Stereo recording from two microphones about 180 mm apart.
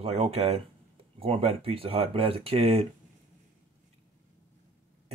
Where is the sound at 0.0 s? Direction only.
35° right (ahead or behind).